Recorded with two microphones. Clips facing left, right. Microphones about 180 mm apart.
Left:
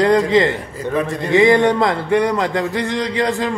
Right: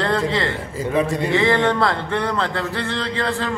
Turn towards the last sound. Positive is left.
turn(degrees=15)  # may be behind; listen again after turning